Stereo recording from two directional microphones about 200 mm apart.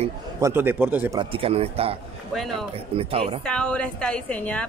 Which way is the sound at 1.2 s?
30° right (ahead or behind).